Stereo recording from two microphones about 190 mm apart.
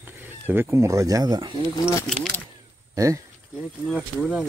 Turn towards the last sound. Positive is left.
turn(degrees=-5)  # may be behind; listen again after turning